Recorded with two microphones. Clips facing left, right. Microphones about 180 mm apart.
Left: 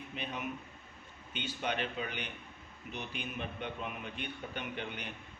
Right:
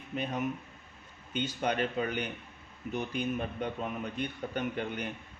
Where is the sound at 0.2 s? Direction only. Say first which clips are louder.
Right 7 dB; 45° right (ahead or behind).